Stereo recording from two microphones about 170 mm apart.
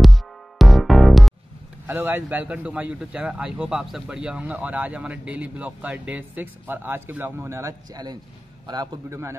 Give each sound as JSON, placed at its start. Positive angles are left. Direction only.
{"t": 0.0, "sound": "music", "side_deg": 0}
{"t": 1.9, "sound": "a man's voice", "side_deg": -10}